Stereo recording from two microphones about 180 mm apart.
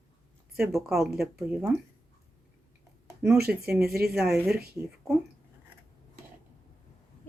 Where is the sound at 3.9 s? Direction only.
60° right (ahead or behind).